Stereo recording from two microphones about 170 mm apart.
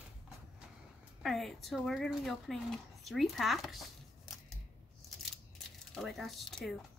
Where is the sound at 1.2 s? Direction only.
Centre (ahead or behind).